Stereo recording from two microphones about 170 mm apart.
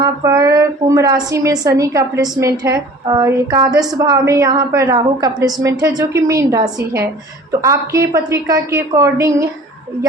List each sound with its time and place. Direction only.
0.0 s a woman's voice: 20° right (ahead or behind)